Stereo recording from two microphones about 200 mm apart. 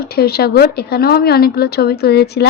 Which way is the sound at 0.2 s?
50° left (ahead or behind).